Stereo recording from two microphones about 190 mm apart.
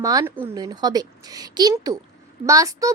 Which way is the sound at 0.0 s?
15° right (ahead or behind).